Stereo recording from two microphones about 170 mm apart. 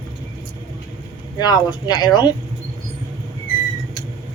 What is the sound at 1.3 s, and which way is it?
Speech, 25° left (ahead or behind).